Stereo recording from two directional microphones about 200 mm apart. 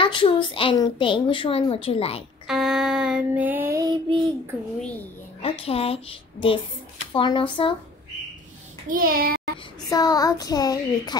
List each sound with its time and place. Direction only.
0.0 s a child's voice: 25° left (ahead or behind)
2.4 s child singing: centre (ahead or behind); by 4.2 s 20° right (ahead or behind)
5.4 s a child's voice: 30° left (ahead or behind)
8.8 s a child's voice: 45° right (ahead or behind)
9.8 s a child's voice: 20° left (ahead or behind)